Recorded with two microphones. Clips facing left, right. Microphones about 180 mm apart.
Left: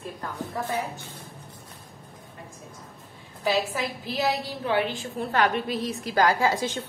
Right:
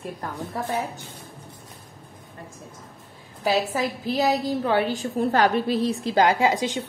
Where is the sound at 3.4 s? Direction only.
40° right (ahead or behind).